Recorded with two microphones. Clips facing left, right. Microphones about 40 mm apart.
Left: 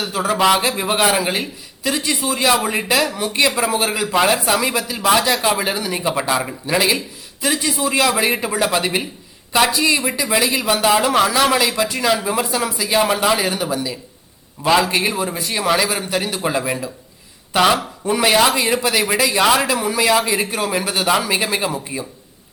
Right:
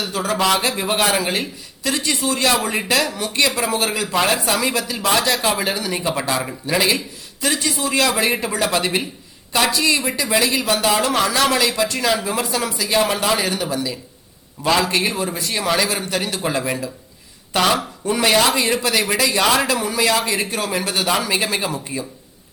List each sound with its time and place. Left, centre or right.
0.0 s speech: centre